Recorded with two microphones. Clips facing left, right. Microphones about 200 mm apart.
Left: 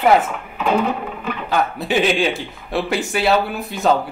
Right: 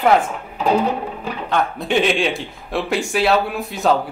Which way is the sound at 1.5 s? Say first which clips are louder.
Even; 5° left (ahead or behind).